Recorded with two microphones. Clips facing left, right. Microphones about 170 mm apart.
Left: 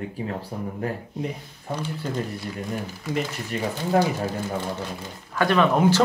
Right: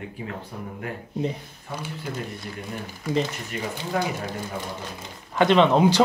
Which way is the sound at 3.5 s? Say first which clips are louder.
Left 4 dB; 35° left (ahead or behind).